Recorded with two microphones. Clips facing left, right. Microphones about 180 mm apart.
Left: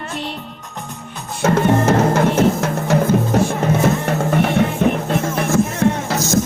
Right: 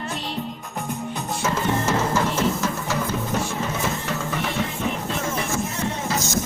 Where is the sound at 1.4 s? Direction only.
60° left (ahead or behind).